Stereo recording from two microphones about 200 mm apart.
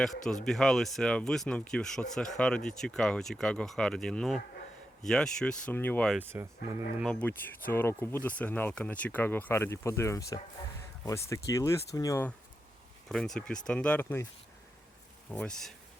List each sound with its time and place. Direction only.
0.4 s speech: centre (ahead or behind)
6.1 s speech: 10° right (ahead or behind)
7.0 s speech: 5° left (ahead or behind)
13.1 s speech: centre (ahead or behind)
15.3 s speech: 5° left (ahead or behind)